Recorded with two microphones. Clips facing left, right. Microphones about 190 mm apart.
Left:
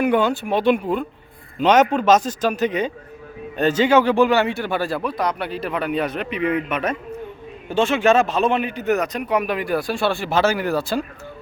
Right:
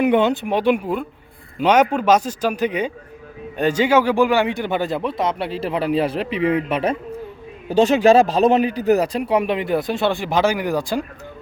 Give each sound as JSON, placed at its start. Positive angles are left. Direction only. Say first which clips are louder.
{"t": 0.0, "sound": "a man's voice", "louder": "right 2 dB", "side_deg": -20}